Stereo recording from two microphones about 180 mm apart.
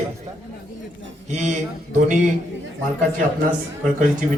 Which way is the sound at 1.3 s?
40° right (ahead or behind).